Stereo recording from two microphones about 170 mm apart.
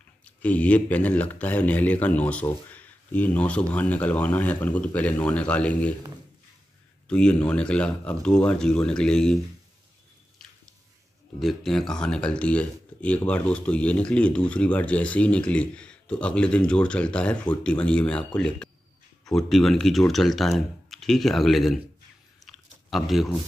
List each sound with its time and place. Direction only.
0.2 s speech: 10° left (ahead or behind)
7.1 s speech: 5° left (ahead or behind)
11.3 s speech: centre (ahead or behind)
22.4 s chewing: centre (ahead or behind)